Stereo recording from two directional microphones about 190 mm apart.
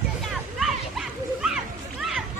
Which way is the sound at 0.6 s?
Centre (ahead or behind).